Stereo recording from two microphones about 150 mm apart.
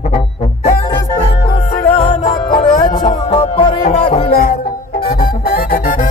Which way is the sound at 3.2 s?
45° left (ahead or behind).